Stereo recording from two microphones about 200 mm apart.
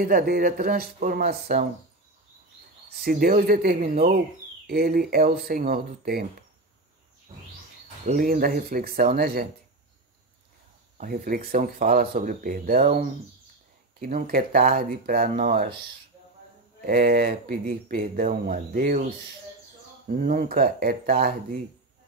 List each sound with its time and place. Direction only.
0.0 s speech: 50° right (ahead or behind)
3.0 s speech: 45° right (ahead or behind)
8.1 s speech: 45° right (ahead or behind)
11.0 s speech: 45° right (ahead or behind)
16.8 s speech: 45° right (ahead or behind)